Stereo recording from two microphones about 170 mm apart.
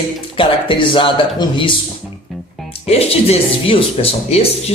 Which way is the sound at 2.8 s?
35° left (ahead or behind).